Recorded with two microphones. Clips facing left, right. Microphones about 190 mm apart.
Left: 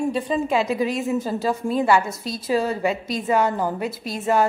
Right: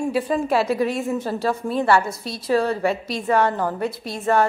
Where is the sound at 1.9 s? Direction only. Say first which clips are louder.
Right 1 dB; 20° left (ahead or behind).